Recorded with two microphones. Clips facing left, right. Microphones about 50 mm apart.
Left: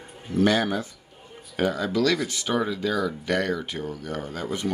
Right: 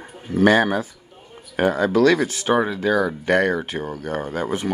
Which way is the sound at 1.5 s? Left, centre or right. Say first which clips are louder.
Right 6 dB; right.